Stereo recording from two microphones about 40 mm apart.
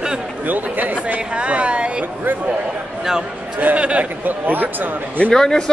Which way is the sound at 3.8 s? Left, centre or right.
Right.